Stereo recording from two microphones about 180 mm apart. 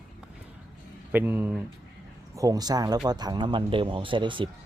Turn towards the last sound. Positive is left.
turn(degrees=-25)  # may be behind; listen again after turning